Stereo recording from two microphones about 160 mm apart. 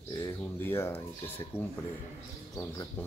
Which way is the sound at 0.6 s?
15° left (ahead or behind).